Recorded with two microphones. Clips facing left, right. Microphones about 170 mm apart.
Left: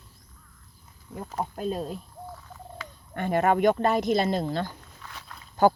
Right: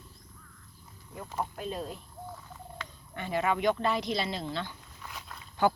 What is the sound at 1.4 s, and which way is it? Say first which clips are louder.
Speech: left 5 dB; 40° left (ahead or behind).